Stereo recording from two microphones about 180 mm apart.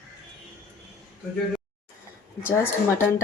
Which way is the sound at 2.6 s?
15° left (ahead or behind).